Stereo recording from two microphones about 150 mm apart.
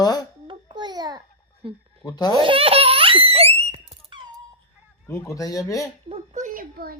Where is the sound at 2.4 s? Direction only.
35° right (ahead or behind).